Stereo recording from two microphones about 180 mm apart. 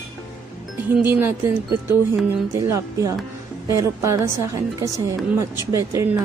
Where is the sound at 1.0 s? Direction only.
10° right (ahead or behind).